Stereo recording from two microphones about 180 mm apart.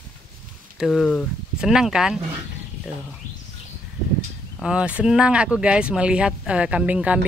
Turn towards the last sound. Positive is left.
turn(degrees=-5)  # may be behind; listen again after turning